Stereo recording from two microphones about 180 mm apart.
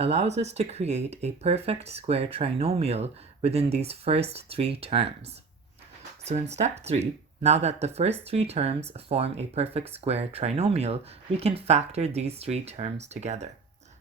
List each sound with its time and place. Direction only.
0.0 s speech: 35° right (ahead or behind)
6.2 s speech: 40° right (ahead or behind)